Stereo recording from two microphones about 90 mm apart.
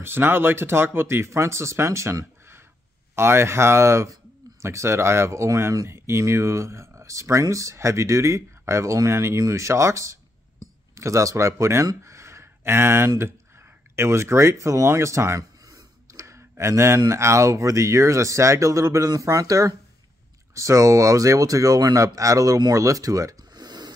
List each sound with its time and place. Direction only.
0.0 s speech: 25° right (ahead or behind)
12.0 s a sound: 30° right (ahead or behind)
13.9 s speech: 30° right (ahead or behind); by 23.9 s 50° right (ahead or behind)